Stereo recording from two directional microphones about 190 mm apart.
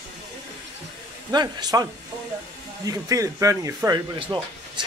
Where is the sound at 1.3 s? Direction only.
20° right (ahead or behind).